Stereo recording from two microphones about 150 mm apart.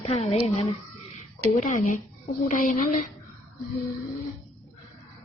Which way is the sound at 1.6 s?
55° left (ahead or behind).